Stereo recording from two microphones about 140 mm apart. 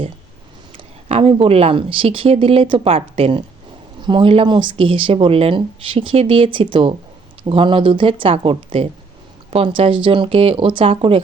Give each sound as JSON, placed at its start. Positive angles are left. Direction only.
{"t": 1.0, "sound": "speech", "side_deg": -45}